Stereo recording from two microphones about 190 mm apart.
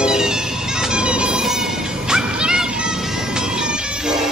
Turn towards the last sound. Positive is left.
turn(degrees=0)  # may be behind; listen again after turning